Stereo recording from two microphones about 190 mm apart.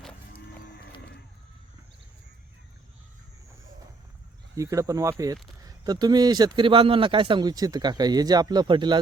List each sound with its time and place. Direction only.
4.5 s speech: 15° right (ahead or behind)